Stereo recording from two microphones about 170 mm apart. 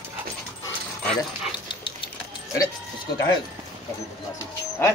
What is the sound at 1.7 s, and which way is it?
Dog, 30° left (ahead or behind).